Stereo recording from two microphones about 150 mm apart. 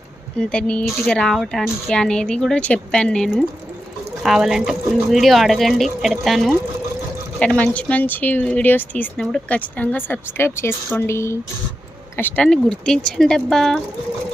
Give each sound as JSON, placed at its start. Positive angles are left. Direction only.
{"t": 0.3, "sound": "speech", "side_deg": 5}
{"t": 12.4, "sound": "speech", "side_deg": 5}